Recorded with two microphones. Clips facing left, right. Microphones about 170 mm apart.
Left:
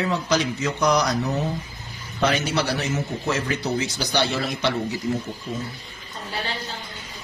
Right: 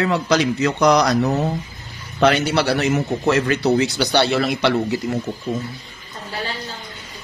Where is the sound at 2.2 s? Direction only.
70° right (ahead or behind).